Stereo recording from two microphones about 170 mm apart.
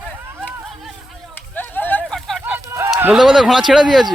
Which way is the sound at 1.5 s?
10° left (ahead or behind).